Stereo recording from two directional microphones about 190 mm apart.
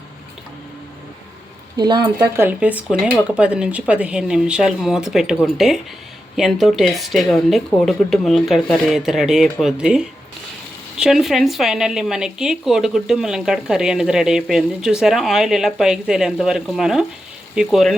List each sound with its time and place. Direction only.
1.7 s a woman's voice: 20° right (ahead or behind); by 17.9 s centre (ahead or behind)